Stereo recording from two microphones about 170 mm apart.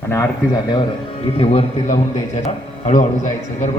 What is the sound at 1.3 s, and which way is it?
A man's voice, 35° left (ahead or behind).